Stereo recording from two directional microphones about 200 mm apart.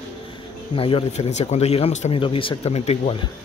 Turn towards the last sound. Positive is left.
turn(degrees=30)  # may be behind; listen again after turning